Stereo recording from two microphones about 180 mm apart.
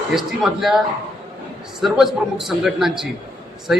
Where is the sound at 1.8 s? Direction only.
Centre (ahead or behind).